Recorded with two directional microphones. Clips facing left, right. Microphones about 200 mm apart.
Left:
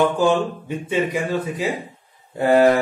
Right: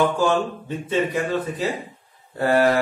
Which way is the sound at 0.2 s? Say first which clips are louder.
Left 2 dB; 15° left (ahead or behind).